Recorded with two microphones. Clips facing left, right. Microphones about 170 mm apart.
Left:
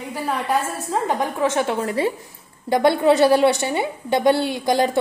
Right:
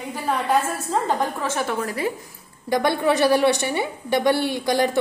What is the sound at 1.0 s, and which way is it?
A woman's voice, 20° left (ahead or behind).